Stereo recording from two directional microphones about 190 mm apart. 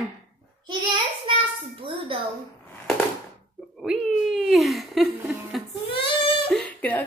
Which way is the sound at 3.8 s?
Centre (ahead or behind).